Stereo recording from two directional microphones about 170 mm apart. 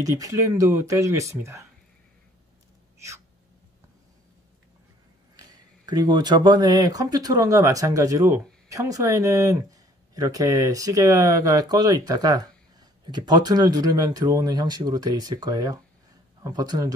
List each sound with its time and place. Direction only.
0.0 s speech: 20° right (ahead or behind)
5.3 s speech: 20° right (ahead or behind)